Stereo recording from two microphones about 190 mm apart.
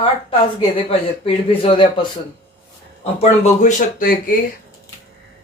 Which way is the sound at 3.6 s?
45° left (ahead or behind).